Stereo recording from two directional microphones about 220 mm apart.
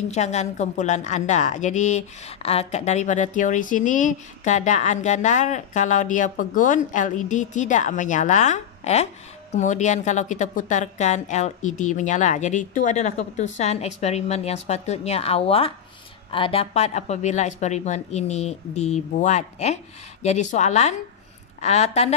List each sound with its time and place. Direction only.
0.1 s a woman's voice: 30° left (ahead or behind)